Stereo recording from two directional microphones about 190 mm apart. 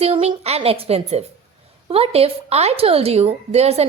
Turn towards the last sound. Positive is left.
turn(degrees=-35)  # may be behind; listen again after turning